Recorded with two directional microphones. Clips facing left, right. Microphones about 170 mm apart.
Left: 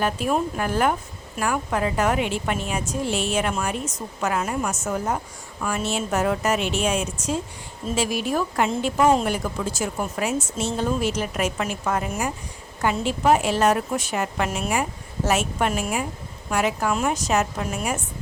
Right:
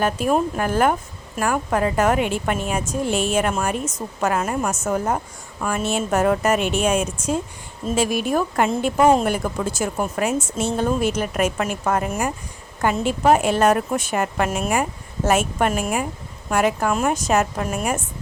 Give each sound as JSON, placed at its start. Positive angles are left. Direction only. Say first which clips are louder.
{"t": 0.0, "sound": "a woman's voice", "louder": "right 3 dB", "side_deg": -45}